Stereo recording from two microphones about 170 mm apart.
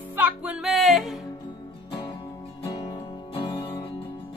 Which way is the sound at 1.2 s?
25° left (ahead or behind).